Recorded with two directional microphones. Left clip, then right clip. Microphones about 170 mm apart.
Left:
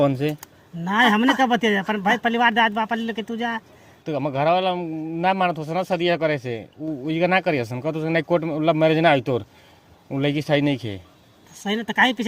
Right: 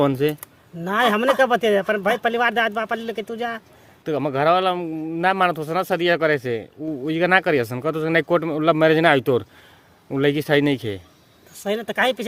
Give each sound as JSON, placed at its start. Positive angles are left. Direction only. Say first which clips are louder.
{"t": 0.0, "sound": "a man's voice", "louder": "right 1 dB", "side_deg": -45}